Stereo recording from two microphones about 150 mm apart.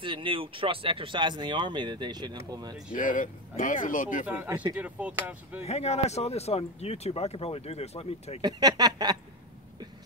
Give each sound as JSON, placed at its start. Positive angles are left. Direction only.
{"t": 0.0, "sound": "speech", "side_deg": -35}
{"t": 2.9, "sound": "speech", "side_deg": 60}
{"t": 4.3, "sound": "speech", "side_deg": -10}
{"t": 5.6, "sound": "speech", "side_deg": 45}
{"t": 8.4, "sound": "speech", "side_deg": -25}